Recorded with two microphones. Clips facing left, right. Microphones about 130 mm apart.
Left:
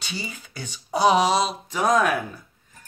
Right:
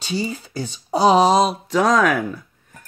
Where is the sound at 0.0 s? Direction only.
35° right (ahead or behind).